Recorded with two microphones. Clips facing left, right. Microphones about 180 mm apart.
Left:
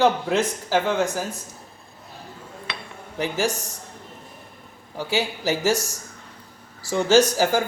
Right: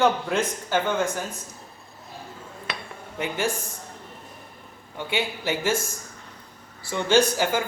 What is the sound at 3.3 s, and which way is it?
Speech, 90° left.